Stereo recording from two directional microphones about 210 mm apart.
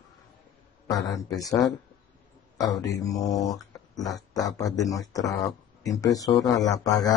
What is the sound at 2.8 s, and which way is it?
Speech, 15° left (ahead or behind).